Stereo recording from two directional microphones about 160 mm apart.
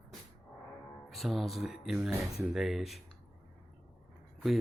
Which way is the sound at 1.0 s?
Centre (ahead or behind).